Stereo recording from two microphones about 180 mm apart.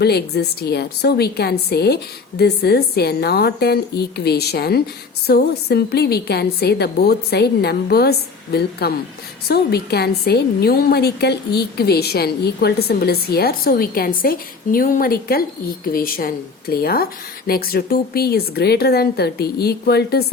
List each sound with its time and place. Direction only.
0.0 s a woman's voice: 65° left (ahead or behind)